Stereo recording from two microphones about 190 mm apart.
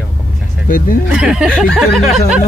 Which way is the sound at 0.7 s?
45° left (ahead or behind).